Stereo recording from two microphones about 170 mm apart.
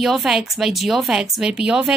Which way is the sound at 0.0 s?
Centre (ahead or behind).